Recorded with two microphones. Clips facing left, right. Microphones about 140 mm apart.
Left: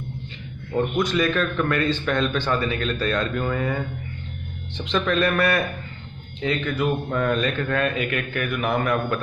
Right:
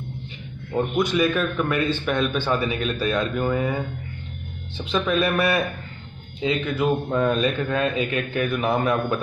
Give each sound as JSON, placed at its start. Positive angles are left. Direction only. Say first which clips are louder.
{"t": 0.7, "sound": "a man's voice", "louder": "right 1 dB", "side_deg": -10}